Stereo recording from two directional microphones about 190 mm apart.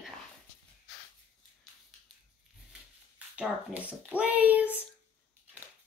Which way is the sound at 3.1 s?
5° right (ahead or behind).